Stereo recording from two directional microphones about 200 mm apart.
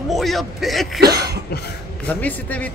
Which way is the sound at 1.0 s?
50° right (ahead or behind).